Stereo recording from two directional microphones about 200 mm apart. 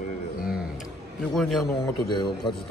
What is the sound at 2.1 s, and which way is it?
Speech, 20° left (ahead or behind).